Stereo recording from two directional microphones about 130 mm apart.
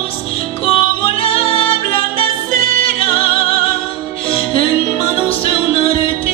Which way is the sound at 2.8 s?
45° left (ahead or behind).